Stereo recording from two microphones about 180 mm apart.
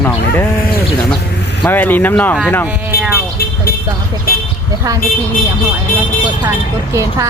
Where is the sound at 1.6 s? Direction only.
10° left (ahead or behind).